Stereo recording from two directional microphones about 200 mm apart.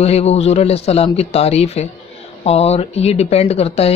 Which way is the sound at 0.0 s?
30° left (ahead or behind).